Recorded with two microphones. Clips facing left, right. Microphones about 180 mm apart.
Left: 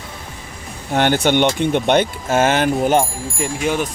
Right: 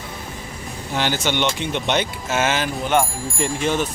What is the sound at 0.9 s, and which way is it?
Speech, 55° left (ahead or behind).